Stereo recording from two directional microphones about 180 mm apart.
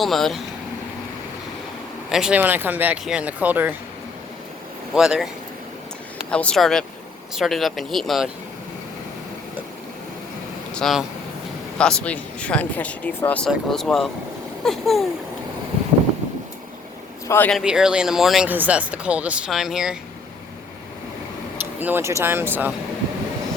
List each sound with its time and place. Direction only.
0.0 s speech: centre (ahead or behind)
2.0 s speech: 5° right (ahead or behind)
4.9 s speech: 5° right (ahead or behind)
6.3 s speech: 5° left (ahead or behind)
10.8 s speech: centre (ahead or behind)
17.2 s speech: 10° left (ahead or behind)
17.5 s speech: 5° right (ahead or behind)
21.8 s speech: 10° right (ahead or behind)